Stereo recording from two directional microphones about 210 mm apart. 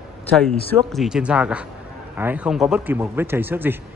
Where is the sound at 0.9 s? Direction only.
Centre (ahead or behind).